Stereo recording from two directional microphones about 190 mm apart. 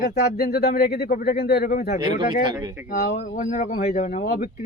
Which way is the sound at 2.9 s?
55° left (ahead or behind).